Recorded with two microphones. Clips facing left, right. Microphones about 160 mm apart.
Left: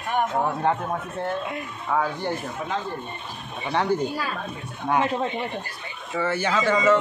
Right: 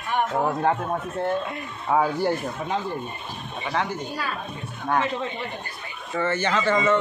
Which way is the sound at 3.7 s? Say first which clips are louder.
Left 5 dB; 25° left (ahead or behind).